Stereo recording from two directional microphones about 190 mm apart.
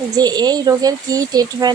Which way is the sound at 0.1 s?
20° right (ahead or behind).